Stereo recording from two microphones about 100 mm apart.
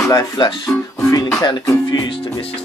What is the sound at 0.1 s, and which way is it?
Speech, 35° left (ahead or behind).